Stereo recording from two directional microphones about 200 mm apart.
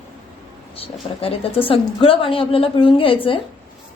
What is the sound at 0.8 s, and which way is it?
A woman's voice, 30° left (ahead or behind).